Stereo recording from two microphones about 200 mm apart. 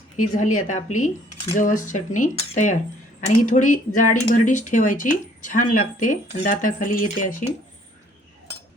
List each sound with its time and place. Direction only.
0.3 s speech: 40° left (ahead or behind)